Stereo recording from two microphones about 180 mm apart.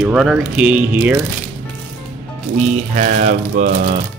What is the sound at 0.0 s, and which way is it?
Speech, 5° right (ahead or behind).